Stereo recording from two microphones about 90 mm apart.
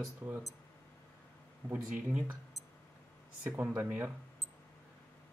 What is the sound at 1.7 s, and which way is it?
Speech, 15° right (ahead or behind).